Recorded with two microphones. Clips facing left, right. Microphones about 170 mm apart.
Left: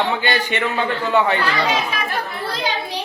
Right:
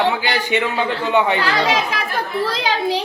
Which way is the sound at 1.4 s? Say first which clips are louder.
Right 2 dB; 90° right.